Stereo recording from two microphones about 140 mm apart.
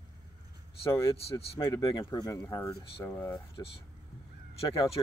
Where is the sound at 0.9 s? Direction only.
20° left (ahead or behind).